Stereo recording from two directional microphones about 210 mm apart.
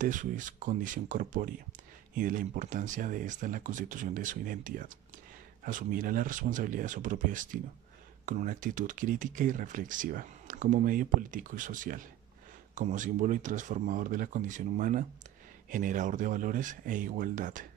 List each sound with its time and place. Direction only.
0.0 s speech: 35° right (ahead or behind)